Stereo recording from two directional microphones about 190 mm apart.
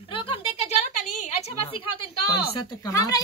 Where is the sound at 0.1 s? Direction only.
30° left (ahead or behind).